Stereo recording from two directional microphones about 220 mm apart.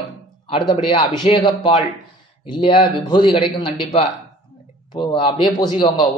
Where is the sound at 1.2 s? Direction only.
25° left (ahead or behind).